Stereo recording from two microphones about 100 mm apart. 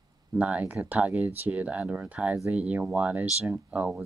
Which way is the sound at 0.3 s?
15° right (ahead or behind).